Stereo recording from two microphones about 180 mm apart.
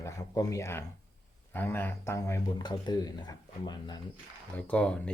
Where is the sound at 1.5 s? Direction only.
10° left (ahead or behind).